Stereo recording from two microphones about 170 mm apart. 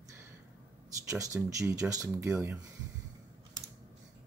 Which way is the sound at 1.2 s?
20° right (ahead or behind).